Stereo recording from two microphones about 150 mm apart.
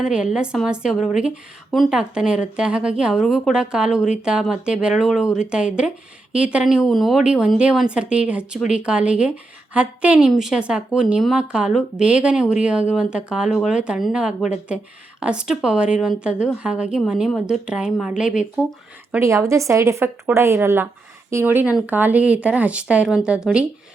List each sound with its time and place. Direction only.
0.0 s a woman's voice: 5° right (ahead or behind)
19.2 s speech: 20° right (ahead or behind)